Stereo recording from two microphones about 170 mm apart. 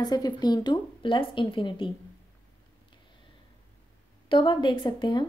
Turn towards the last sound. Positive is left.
turn(degrees=25)  # may be behind; listen again after turning